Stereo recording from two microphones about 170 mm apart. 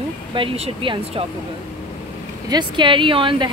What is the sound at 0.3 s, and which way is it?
Speech, 30° right (ahead or behind).